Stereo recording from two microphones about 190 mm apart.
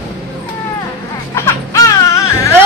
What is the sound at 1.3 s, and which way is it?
Music, 15° left (ahead or behind).